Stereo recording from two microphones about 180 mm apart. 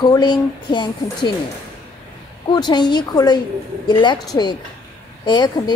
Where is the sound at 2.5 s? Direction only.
25° left (ahead or behind).